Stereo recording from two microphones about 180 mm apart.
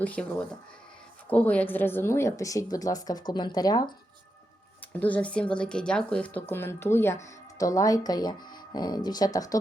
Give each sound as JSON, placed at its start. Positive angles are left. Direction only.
{"t": 0.0, "sound": "a woman's voice", "side_deg": 5}
{"t": 4.9, "sound": "speech", "side_deg": 10}